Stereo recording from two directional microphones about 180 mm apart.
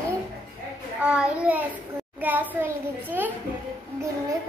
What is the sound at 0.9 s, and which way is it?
Child singing, 5° right (ahead or behind).